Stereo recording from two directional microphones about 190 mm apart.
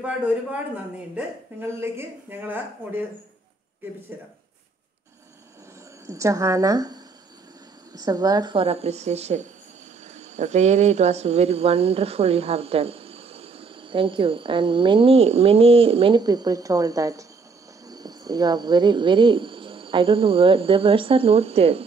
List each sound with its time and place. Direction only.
0.0 s a woman's voice: 5° right (ahead or behind)
6.0 s a woman's voice: 15° right (ahead or behind)